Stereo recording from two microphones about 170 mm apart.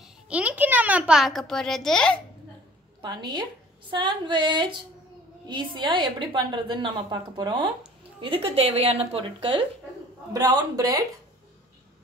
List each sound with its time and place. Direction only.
0.0 s a sound: 10° right (ahead or behind)
3.0 s a woman's voice: 25° right (ahead or behind)
10.3 s a woman's voice: 20° right (ahead or behind)